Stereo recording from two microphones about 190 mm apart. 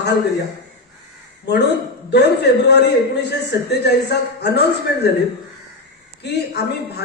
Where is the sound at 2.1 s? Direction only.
65° left (ahead or behind).